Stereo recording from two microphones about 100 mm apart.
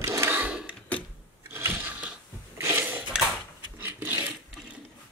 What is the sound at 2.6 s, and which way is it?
Dishes, 20° right (ahead or behind).